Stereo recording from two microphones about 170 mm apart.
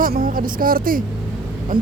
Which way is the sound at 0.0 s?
55° right (ahead or behind).